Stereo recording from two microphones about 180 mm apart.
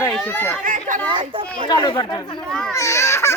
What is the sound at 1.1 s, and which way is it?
Children playing, 25° right (ahead or behind).